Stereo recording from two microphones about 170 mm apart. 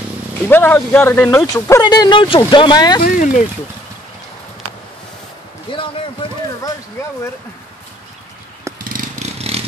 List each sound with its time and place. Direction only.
0.5 s speech: 10° left (ahead or behind)
1.4 s speech: 20° left (ahead or behind)
3.0 s speech: 50° left (ahead or behind)
8.7 s vehicle: 55° right (ahead or behind); by 9.6 s 40° right (ahead or behind)